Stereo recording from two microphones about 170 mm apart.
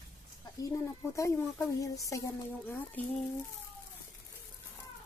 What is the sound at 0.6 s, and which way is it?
Speech, 15° left (ahead or behind).